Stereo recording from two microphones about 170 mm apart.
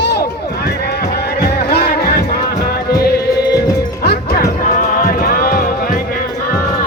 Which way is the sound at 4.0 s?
70° left (ahead or behind).